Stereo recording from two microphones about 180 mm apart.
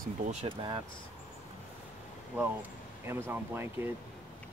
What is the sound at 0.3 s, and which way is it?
Speech, 30° right (ahead or behind).